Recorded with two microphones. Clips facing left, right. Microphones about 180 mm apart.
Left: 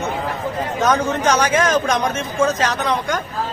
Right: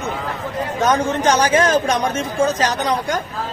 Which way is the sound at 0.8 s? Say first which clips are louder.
Right 1 dB; 35° right (ahead or behind).